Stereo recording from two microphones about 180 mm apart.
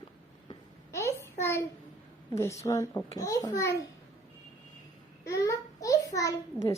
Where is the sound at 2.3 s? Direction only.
15° left (ahead or behind).